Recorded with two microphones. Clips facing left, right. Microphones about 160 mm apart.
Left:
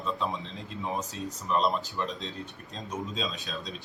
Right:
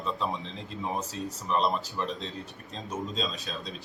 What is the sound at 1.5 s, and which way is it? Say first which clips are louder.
Speech: even; centre (ahead or behind).